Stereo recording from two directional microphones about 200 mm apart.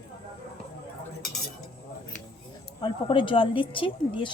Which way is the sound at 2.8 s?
25° left (ahead or behind).